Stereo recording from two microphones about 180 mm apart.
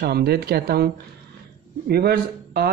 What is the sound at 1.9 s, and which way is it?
Speech, 60° right (ahead or behind).